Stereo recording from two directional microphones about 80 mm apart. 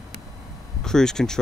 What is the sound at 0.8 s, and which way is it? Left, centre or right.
Speech, centre.